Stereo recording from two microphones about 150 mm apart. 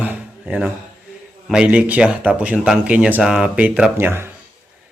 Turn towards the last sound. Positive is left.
turn(degrees=-15)  # may be behind; listen again after turning